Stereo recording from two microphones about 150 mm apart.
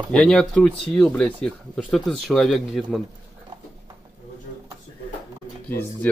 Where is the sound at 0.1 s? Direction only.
5° left (ahead or behind).